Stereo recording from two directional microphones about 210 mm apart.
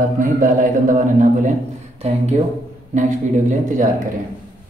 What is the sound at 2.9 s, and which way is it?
Speech, 35° right (ahead or behind).